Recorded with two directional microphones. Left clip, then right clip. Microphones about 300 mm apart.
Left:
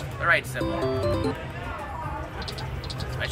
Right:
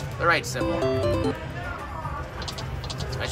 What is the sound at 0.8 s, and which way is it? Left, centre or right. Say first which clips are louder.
Speech: right 1 dB; centre.